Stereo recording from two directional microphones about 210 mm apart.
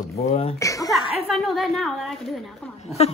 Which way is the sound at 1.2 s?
Centre (ahead or behind).